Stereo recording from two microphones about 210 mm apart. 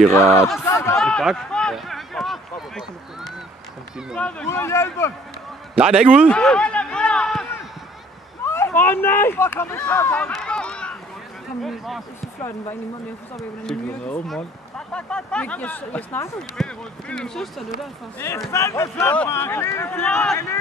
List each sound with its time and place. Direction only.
0.1 s speech: 10° left (ahead or behind)
0.7 s a sound: 15° left (ahead or behind)
0.9 s a sound: 5° left (ahead or behind)
4.1 s speech: 5° left (ahead or behind)
5.8 s speech: 5° right (ahead or behind)
6.2 s a sound: 5° left (ahead or behind)
8.5 s speech: 10° left (ahead or behind)
12.4 s speech: 10° left (ahead or behind)
18.5 s speech: 15° left (ahead or behind)